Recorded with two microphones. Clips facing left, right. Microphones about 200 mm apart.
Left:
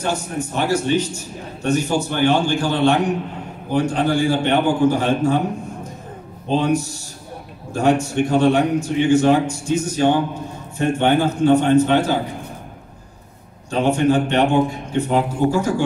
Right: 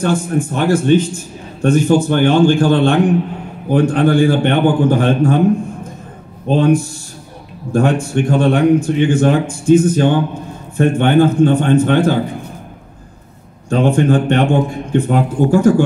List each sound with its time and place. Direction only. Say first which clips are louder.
0.0 s a man's voice: right 7 dB; 50° right (ahead or behind)
6.4 s a man's voice: right 6 dB; 55° right (ahead or behind)
13.7 s a man's voice: right 4 dB; 55° right (ahead or behind)